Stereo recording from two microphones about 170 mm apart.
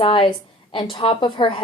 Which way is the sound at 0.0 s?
30° left (ahead or behind).